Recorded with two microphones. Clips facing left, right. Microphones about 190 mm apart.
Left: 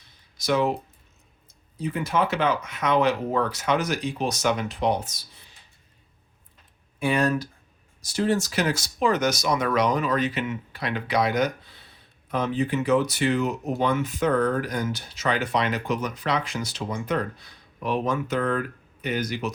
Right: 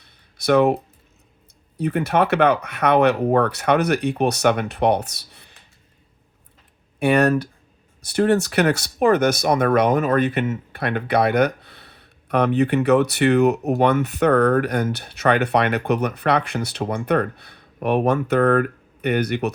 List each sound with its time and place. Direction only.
0.0 s a sound: 60° right (ahead or behind)
1.8 s speech: 65° right (ahead or behind)
7.0 s speech: 65° right (ahead or behind)